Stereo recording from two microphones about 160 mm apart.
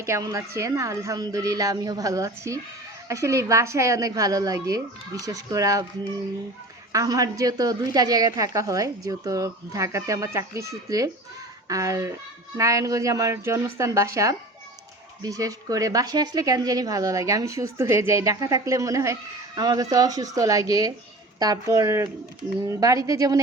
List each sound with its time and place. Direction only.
0.0 s a woman's voice: 20° right (ahead or behind)
6.9 s a woman's voice: 20° right (ahead or behind)